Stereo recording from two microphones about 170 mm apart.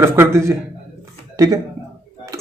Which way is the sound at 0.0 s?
15° right (ahead or behind).